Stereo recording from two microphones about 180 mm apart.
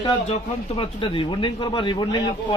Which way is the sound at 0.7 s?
25° left (ahead or behind).